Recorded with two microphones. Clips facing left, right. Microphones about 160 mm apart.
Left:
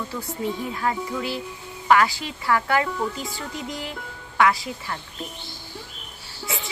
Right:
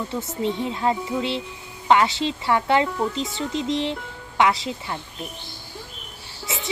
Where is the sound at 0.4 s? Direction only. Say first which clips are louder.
Right 3 dB; 25° right (ahead or behind).